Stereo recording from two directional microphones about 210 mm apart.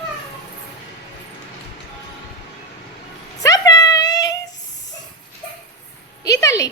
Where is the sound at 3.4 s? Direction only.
15° left (ahead or behind).